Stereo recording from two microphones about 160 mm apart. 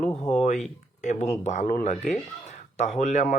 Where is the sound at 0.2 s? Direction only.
45° left (ahead or behind).